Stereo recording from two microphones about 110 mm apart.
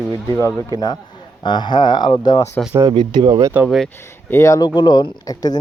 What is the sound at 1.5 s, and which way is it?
Speech, 45° left (ahead or behind).